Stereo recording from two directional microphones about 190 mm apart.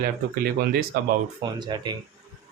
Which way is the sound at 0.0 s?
55° right (ahead or behind).